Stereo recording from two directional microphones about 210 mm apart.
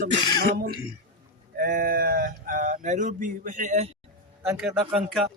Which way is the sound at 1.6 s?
40° right (ahead or behind).